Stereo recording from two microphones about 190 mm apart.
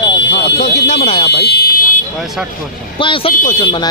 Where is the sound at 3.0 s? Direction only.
30° left (ahead or behind).